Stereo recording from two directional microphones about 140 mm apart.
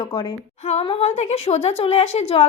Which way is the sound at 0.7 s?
50° left (ahead or behind).